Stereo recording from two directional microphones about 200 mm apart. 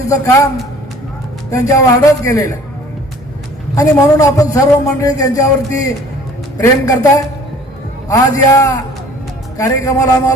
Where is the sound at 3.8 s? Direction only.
15° left (ahead or behind).